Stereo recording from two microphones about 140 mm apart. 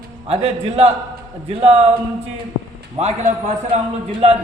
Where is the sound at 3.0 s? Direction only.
50° right (ahead or behind).